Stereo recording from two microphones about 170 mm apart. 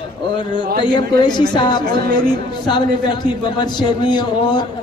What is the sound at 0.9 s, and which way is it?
A man's voice, 25° left (ahead or behind).